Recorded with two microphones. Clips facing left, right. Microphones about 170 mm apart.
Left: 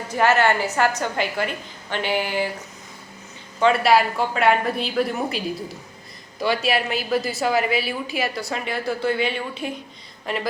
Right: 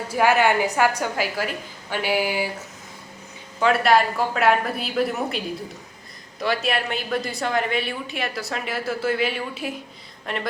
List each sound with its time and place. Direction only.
0.1 s a woman's voice: 10° right (ahead or behind)
3.6 s a woman's voice: centre (ahead or behind)
6.4 s a woman's voice: centre (ahead or behind)